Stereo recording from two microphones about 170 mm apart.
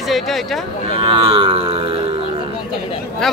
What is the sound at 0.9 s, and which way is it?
Music, 30° right (ahead or behind).